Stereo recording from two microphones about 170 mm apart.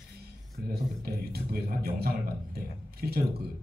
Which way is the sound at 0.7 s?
65° right (ahead or behind).